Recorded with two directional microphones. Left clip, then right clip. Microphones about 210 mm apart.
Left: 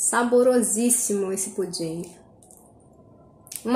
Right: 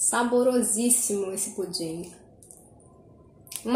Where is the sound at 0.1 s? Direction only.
35° left (ahead or behind).